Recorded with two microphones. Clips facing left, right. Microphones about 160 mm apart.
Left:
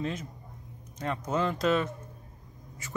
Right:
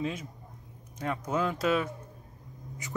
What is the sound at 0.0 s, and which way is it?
Speech, 10° right (ahead or behind).